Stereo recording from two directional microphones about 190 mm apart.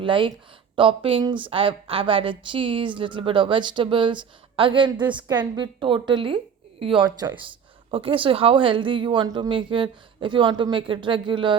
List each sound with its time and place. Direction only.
0.0 s a woman's voice: 25° right (ahead or behind)